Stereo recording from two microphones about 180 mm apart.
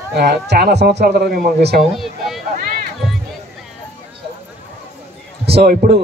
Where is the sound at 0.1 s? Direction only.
65° right (ahead or behind).